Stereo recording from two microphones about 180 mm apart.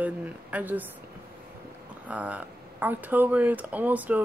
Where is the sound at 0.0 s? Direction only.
10° right (ahead or behind).